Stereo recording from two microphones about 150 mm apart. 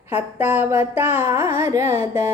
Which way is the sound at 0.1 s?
15° right (ahead or behind).